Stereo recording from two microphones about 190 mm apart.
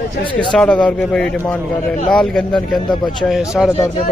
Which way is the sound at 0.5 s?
5° left (ahead or behind).